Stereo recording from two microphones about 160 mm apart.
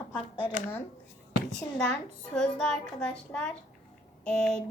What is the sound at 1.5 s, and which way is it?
A woman's voice, 5° left (ahead or behind).